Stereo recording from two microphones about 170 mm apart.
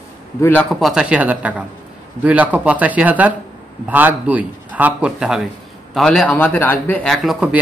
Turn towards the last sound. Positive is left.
turn(degrees=-5)  # may be behind; listen again after turning